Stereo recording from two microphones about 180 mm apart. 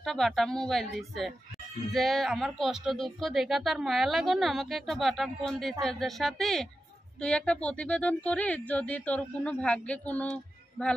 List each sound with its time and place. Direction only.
0.0 s speech: centre (ahead or behind)